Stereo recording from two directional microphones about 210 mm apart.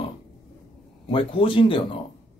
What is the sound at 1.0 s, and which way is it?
Speech, 25° left (ahead or behind).